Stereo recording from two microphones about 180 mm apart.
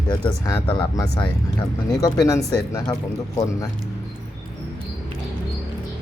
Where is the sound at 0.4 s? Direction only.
20° left (ahead or behind).